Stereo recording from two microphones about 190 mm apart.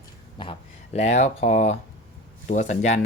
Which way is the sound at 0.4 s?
25° left (ahead or behind).